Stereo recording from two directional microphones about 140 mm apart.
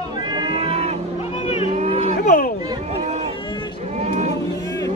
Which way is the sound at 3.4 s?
30° left (ahead or behind).